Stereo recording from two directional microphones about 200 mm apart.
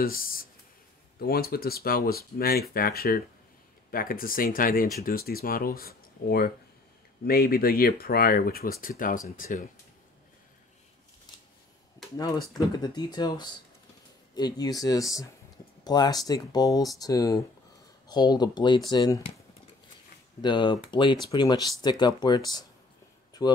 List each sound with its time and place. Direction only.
0.0 s a sound: 45° left (ahead or behind)
1.2 s speech: 50° left (ahead or behind)
12.2 s speech: 20° left (ahead or behind)
20.4 s speech: 25° left (ahead or behind)